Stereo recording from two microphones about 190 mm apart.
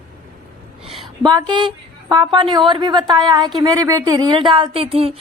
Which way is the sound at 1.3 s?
25° right (ahead or behind).